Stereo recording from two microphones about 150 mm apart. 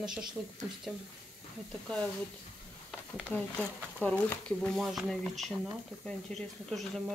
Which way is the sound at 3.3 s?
10° left (ahead or behind).